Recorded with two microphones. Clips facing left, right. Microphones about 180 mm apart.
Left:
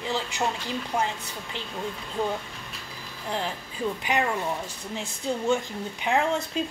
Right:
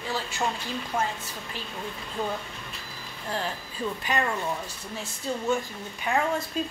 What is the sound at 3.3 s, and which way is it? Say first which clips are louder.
A woman's voice: left 1 dB; 20° left (ahead or behind).